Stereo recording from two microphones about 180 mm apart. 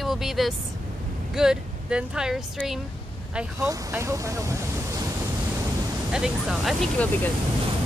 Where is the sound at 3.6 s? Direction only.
15° right (ahead or behind).